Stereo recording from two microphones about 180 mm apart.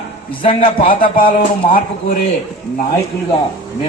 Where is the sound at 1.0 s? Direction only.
50° left (ahead or behind).